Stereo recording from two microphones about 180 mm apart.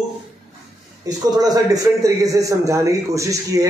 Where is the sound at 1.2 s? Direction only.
20° right (ahead or behind).